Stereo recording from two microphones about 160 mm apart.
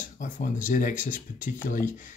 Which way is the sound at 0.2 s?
55° left (ahead or behind).